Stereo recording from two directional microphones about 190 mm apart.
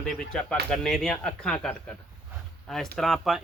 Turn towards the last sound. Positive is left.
turn(degrees=0)  # may be behind; listen again after turning